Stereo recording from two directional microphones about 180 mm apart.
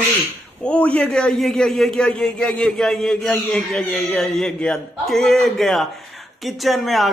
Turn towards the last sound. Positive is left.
turn(degrees=0)  # may be behind; listen again after turning